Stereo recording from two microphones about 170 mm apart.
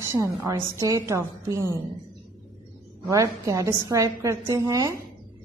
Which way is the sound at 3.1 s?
20° right (ahead or behind).